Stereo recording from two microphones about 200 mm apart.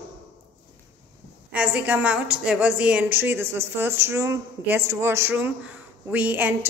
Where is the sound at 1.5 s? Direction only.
5° right (ahead or behind).